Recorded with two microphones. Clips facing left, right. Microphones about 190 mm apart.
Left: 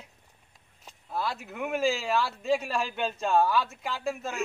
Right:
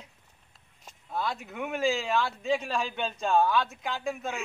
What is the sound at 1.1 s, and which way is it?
Speech, 5° left (ahead or behind).